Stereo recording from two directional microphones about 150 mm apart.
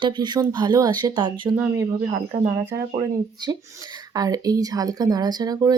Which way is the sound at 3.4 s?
30° right (ahead or behind).